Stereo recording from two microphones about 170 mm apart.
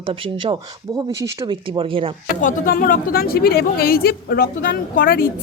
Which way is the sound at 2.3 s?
50° left (ahead or behind).